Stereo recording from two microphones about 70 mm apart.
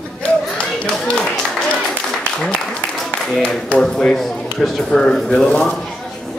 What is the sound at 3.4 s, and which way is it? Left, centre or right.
Speech, centre.